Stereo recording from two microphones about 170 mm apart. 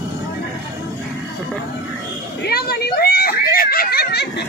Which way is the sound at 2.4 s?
65° left (ahead or behind).